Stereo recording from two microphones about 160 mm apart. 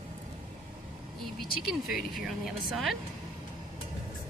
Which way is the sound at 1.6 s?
Centre (ahead or behind).